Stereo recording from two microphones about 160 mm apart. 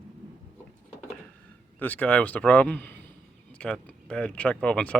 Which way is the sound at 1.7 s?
10° left (ahead or behind).